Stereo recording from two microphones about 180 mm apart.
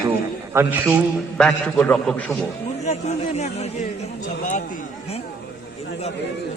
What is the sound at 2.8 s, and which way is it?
Speech, 40° left (ahead or behind).